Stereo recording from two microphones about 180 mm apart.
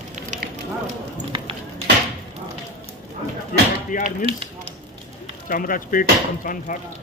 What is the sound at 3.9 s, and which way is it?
Speech, 45° left (ahead or behind).